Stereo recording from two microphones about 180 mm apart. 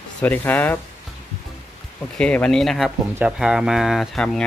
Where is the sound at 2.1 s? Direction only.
5° left (ahead or behind).